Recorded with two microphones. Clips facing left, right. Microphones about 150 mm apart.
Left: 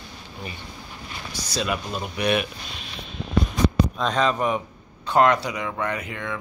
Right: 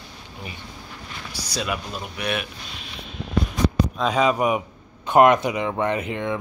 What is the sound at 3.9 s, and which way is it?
Speech, 10° right (ahead or behind).